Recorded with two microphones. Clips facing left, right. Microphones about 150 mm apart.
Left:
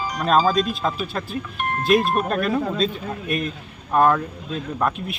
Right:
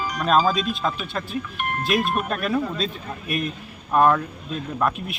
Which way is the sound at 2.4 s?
Centre (ahead or behind).